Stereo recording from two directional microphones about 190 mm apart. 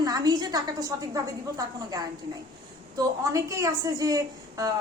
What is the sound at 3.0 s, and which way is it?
A woman's voice, 15° right (ahead or behind).